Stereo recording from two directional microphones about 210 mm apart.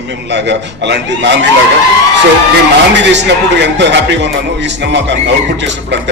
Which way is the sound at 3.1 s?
55° right (ahead or behind).